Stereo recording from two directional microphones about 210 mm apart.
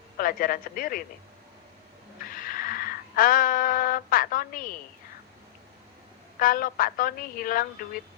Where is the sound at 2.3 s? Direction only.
40° left (ahead or behind).